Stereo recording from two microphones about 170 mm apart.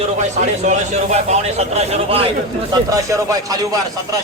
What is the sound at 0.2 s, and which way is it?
A man's voice, 45° right (ahead or behind).